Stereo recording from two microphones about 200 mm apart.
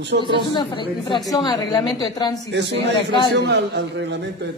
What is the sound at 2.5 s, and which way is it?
Speech, 60° right (ahead or behind).